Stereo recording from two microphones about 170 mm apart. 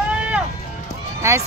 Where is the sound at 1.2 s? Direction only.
15° right (ahead or behind).